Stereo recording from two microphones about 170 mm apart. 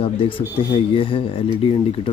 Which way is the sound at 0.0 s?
30° left (ahead or behind).